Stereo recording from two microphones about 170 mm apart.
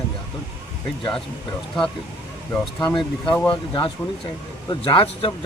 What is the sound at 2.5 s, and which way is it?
Speech, 5° left (ahead or behind).